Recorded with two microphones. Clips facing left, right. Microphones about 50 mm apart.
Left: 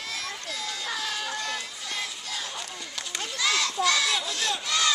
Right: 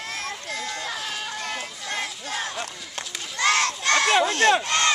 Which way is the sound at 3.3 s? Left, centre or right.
Right.